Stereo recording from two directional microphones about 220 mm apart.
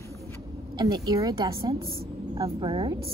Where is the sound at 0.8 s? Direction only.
20° right (ahead or behind).